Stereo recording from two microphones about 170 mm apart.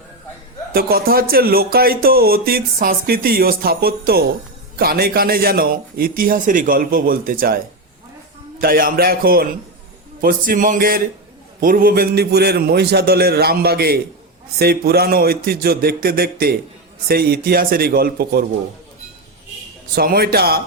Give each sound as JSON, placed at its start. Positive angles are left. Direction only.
{"t": 0.7, "sound": "music", "side_deg": -65}
{"t": 8.6, "sound": "music", "side_deg": -60}
{"t": 11.6, "sound": "a man's voice", "side_deg": -55}
{"t": 14.6, "sound": "music", "side_deg": -65}
{"t": 20.0, "sound": "music", "side_deg": -60}